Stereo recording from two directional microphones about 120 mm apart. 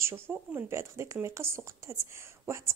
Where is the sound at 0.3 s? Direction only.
10° right (ahead or behind).